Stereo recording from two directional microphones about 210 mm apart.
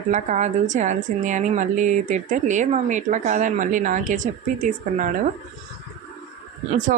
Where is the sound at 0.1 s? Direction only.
35° right (ahead or behind).